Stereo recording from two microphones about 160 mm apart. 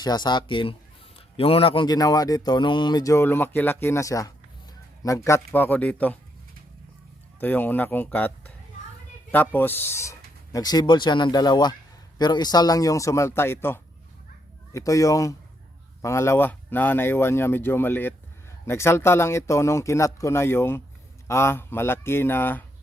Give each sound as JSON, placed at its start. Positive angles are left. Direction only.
{"t": 0.0, "sound": "speech", "side_deg": 25}
{"t": 7.3, "sound": "speech", "side_deg": 10}